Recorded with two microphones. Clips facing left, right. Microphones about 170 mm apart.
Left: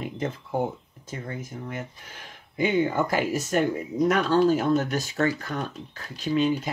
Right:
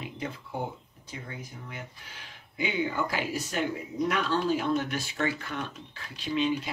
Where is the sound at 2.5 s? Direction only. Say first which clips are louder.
Left 7 dB; 50° left (ahead or behind).